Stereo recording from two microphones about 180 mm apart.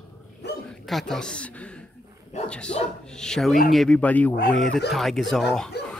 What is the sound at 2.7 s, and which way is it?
Speech, 40° left (ahead or behind).